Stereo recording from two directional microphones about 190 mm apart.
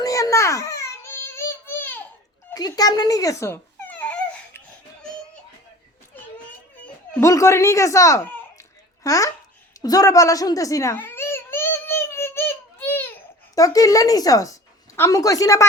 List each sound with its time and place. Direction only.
0.0 s a sound: 15° left (ahead or behind)
2.5 s dog: 20° left (ahead or behind)
7.2 s speech: 15° left (ahead or behind)
9.8 s baby cry: 20° left (ahead or behind)
13.6 s speech: 20° left (ahead or behind)